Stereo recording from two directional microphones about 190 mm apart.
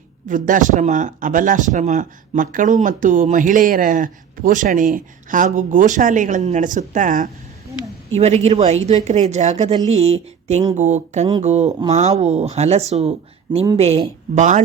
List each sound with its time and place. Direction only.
0.3 s speech: 45° right (ahead or behind)
10.8 s speech: 40° right (ahead or behind)